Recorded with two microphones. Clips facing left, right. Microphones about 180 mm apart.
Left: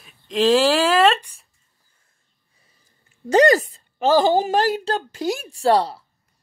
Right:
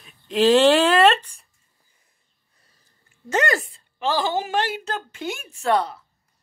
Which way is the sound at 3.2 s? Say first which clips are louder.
Left 8 dB; 35° left (ahead or behind).